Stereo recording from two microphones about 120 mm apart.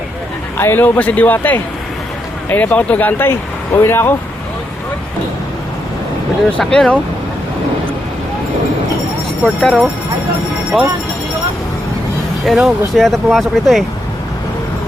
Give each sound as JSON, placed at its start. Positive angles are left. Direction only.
{"t": 0.5, "sound": "speech", "side_deg": 15}
{"t": 6.6, "sound": "speech", "side_deg": 5}
{"t": 9.4, "sound": "speech", "side_deg": 0}
{"t": 12.5, "sound": "speech", "side_deg": -5}